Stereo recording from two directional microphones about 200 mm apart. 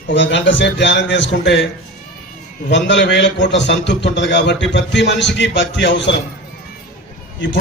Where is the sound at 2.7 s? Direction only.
60° left (ahead or behind).